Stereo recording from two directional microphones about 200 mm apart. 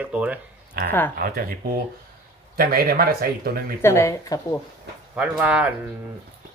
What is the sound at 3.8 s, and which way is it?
Speech, 15° left (ahead or behind).